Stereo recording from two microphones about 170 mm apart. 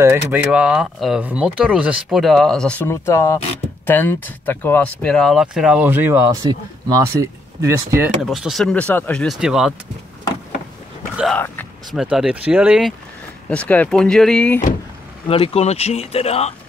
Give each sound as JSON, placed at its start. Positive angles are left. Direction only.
{"t": 0.0, "sound": "speech", "side_deg": -15}
{"t": 0.5, "sound": "speech", "side_deg": -5}
{"t": 8.2, "sound": "speech", "side_deg": 0}
{"t": 11.3, "sound": "speech", "side_deg": 10}
{"t": 11.9, "sound": "speech", "side_deg": 0}
{"t": 13.5, "sound": "speech", "side_deg": 10}
{"t": 15.2, "sound": "speech", "side_deg": 35}